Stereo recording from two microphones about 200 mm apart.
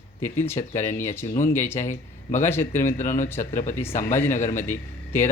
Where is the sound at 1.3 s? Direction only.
40° left (ahead or behind).